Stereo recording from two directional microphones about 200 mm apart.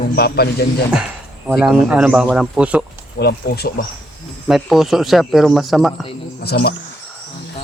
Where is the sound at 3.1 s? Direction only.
55° left (ahead or behind).